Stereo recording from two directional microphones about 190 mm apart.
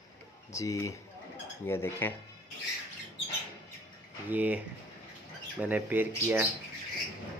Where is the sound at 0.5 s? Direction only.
15° left (ahead or behind).